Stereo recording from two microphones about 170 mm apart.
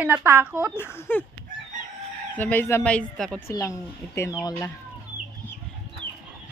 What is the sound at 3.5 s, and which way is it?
Speech, 20° left (ahead or behind).